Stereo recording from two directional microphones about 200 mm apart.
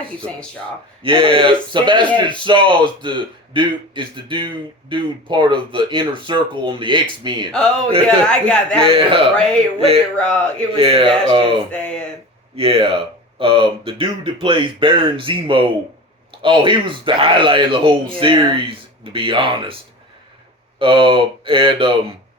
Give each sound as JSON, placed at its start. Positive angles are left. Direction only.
{"t": 1.0, "sound": "a man's voice", "side_deg": -25}
{"t": 8.0, "sound": "speech", "side_deg": 5}
{"t": 8.8, "sound": "a man's voice", "side_deg": -25}
{"t": 9.3, "sound": "speech", "side_deg": 5}
{"t": 10.8, "sound": "a man's voice", "side_deg": -25}
{"t": 11.7, "sound": "speech", "side_deg": 5}
{"t": 12.5, "sound": "a man's voice", "side_deg": -30}
{"t": 20.7, "sound": "a man's voice", "side_deg": -25}